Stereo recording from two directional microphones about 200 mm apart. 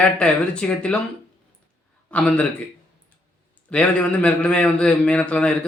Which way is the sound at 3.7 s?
5° left (ahead or behind).